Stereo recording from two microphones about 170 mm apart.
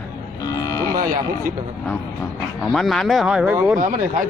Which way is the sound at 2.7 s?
Centre (ahead or behind).